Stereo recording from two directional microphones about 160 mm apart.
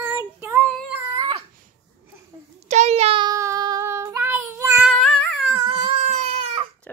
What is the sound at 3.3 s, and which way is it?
Child singing, 20° right (ahead or behind).